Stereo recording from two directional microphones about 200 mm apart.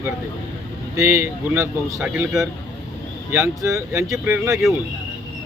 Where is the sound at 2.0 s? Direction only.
Centre (ahead or behind).